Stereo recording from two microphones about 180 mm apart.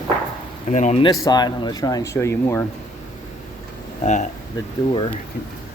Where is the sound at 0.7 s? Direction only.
40° left (ahead or behind).